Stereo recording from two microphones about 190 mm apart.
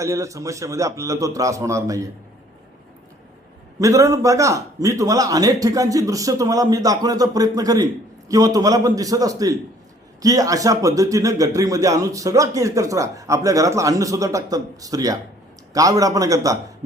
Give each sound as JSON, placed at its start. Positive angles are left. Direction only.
{"t": 0.0, "sound": "a man's voice", "side_deg": -15}
{"t": 3.8, "sound": "a man's voice", "side_deg": -15}